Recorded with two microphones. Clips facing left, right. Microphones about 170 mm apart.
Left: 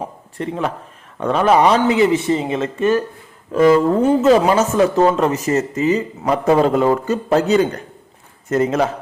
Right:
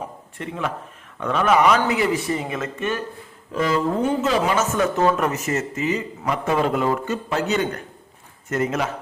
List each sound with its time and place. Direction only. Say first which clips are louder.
0.3 s a man's voice: left 6 dB; 35° left (ahead or behind)
3.5 s speech: left 9 dB; 50° left (ahead or behind); by 8.9 s 35° left (ahead or behind)